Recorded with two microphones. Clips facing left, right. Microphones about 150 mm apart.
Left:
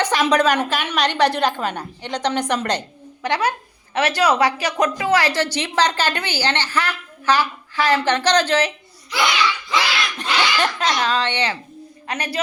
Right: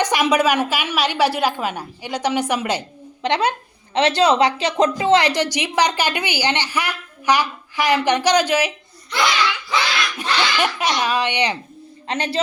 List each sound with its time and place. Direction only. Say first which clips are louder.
0.0 s a woman's voice: even; 10° right (ahead or behind)
3.2 s a woman's voice: right 1 dB; 20° right (ahead or behind)
9.0 s a child's voice: even; centre (ahead or behind)
10.2 s a woman's voice: even; 10° right (ahead or behind)
12.0 s a woman's voice: right 3 dB; 25° right (ahead or behind)